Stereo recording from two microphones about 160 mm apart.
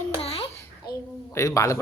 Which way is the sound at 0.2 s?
40° left (ahead or behind).